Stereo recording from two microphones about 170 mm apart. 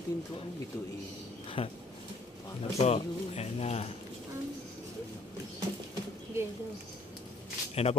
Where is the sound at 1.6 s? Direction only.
30° left (ahead or behind).